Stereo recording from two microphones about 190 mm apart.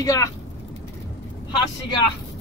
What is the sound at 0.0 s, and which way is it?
Speech, 20° left (ahead or behind).